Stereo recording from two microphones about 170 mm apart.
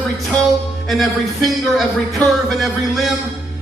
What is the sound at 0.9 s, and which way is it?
Speech, centre (ahead or behind).